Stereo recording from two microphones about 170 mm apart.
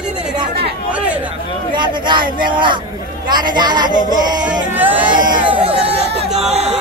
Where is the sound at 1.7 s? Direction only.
25° right (ahead or behind).